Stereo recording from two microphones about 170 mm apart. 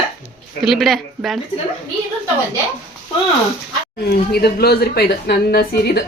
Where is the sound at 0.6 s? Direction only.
Centre (ahead or behind).